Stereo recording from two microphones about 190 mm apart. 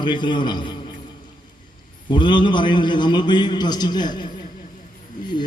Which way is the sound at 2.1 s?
25° left (ahead or behind).